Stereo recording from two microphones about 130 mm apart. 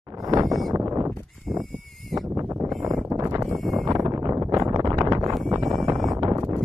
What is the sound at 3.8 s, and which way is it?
Wind noise, 25° right (ahead or behind).